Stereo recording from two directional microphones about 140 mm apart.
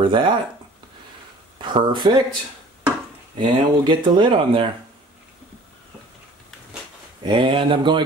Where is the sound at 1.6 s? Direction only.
35° right (ahead or behind).